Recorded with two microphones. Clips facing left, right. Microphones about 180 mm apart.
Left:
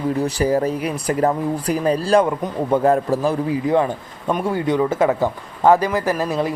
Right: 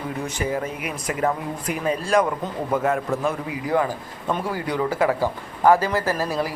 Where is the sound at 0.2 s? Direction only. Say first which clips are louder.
Left 6 dB; 35° left (ahead or behind).